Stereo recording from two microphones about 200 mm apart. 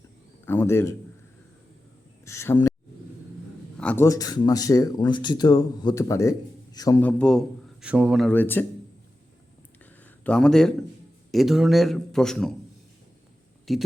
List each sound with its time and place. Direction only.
0.4 s a man's voice: 10° left (ahead or behind)
2.2 s a sound: 15° left (ahead or behind)
3.8 s a man's voice: 10° left (ahead or behind)
8.3 s speech: 10° left (ahead or behind)
10.2 s a man's voice: 5° left (ahead or behind)
13.7 s a man's voice: centre (ahead or behind)